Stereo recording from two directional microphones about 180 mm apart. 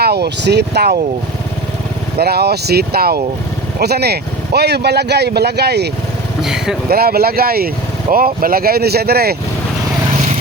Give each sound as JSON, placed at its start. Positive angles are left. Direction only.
{"t": 0.0, "sound": "speech", "side_deg": -65}
{"t": 2.1, "sound": "speech", "side_deg": -60}
{"t": 6.4, "sound": "speech", "side_deg": -5}
{"t": 6.8, "sound": "speech", "side_deg": -60}